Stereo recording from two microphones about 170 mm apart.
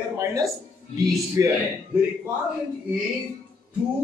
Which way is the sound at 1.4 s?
20° right (ahead or behind).